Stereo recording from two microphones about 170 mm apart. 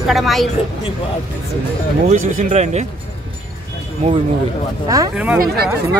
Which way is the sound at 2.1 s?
50° right (ahead or behind).